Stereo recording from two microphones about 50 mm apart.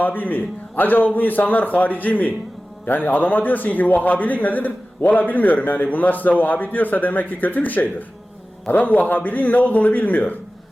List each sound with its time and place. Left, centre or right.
0.0 s a man's voice: left